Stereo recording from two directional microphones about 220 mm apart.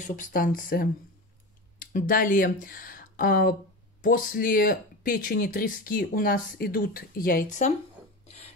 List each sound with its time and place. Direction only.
0.0 s speech: 35° left (ahead or behind)